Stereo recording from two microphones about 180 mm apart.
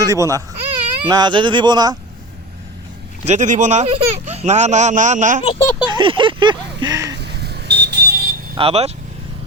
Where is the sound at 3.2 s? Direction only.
40° right (ahead or behind).